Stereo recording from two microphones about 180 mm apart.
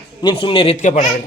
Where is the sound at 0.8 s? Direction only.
45° left (ahead or behind).